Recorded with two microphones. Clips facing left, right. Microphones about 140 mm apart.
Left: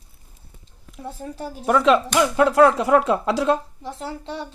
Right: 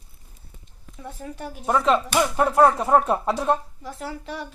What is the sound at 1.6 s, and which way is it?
Speech, 85° left.